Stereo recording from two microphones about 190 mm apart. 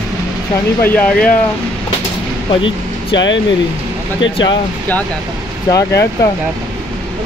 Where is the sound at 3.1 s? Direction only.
25° left (ahead or behind).